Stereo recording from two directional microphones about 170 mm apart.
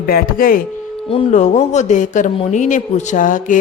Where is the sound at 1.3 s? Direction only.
45° left (ahead or behind).